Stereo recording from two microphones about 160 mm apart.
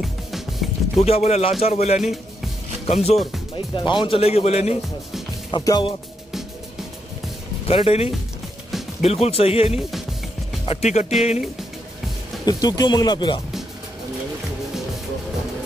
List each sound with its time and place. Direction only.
0.0 s music: centre (ahead or behind)
1.0 s speech: 40° left (ahead or behind)
3.5 s speech: 30° left (ahead or behind)
5.5 s speech: 25° left (ahead or behind)
7.6 s speech: 40° left (ahead or behind)
9.8 s speech: centre (ahead or behind)
10.6 s speech: 40° left (ahead or behind)
12.4 s speech: 25° left (ahead or behind)